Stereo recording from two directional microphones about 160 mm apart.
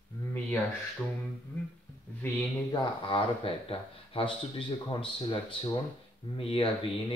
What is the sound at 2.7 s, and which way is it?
Speech, 30° left (ahead or behind).